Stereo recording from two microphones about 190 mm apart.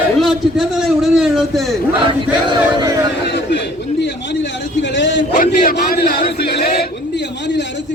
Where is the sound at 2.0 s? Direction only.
20° right (ahead or behind).